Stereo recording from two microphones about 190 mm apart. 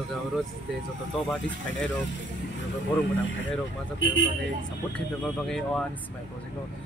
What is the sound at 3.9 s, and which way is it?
Speech, 75° left (ahead or behind).